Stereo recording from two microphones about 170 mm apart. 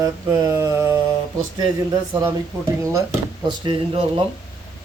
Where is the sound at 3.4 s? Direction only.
30° right (ahead or behind).